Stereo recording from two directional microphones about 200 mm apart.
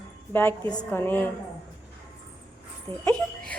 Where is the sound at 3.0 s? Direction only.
5° left (ahead or behind).